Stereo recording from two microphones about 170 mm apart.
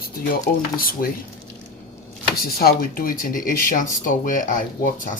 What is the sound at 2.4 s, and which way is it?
Speech, 65° left (ahead or behind).